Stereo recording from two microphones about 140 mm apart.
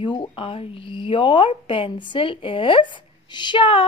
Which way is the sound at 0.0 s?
35° left (ahead or behind).